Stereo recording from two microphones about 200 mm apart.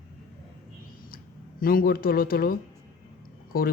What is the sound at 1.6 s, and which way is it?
Speech, 45° left (ahead or behind).